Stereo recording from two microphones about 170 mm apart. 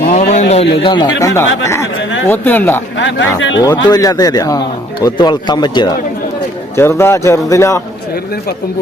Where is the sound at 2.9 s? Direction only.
90° left.